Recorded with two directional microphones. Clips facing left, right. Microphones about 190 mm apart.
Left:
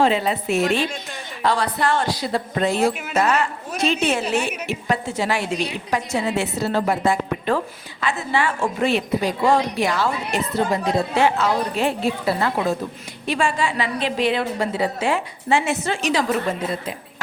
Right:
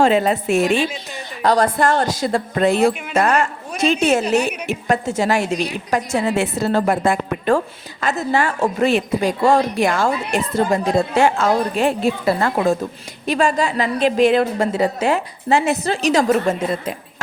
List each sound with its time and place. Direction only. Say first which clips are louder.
0.0 s a woman's voice: right 4 dB; 45° right (ahead or behind)